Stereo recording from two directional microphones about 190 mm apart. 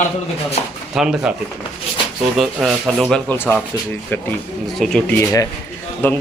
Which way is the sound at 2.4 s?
Centre (ahead or behind).